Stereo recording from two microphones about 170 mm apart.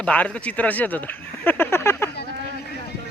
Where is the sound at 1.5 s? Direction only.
15° left (ahead or behind).